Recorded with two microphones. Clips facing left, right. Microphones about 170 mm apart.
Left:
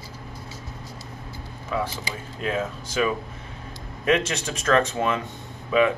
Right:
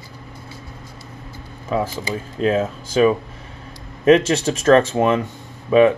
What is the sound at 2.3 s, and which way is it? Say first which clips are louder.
Speech: right 8 dB; 30° right (ahead or behind).